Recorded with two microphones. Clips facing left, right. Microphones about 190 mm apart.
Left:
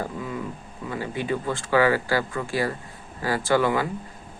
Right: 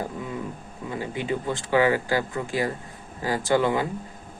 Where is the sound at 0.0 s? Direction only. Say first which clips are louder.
Left 1 dB; 25° right (ahead or behind).